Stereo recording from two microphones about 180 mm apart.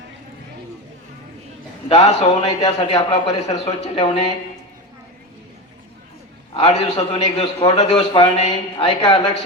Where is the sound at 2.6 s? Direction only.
25° left (ahead or behind).